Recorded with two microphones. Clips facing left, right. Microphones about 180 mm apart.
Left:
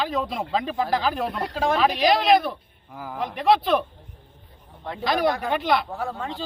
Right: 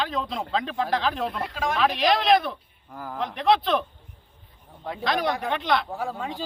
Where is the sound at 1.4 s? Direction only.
30° left (ahead or behind).